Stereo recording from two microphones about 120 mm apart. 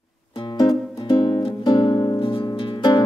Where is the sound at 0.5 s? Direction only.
30° left (ahead or behind).